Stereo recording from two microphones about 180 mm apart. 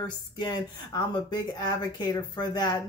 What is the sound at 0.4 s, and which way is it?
Speech, 25° left (ahead or behind).